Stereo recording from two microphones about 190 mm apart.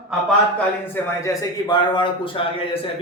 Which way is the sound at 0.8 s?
10° left (ahead or behind).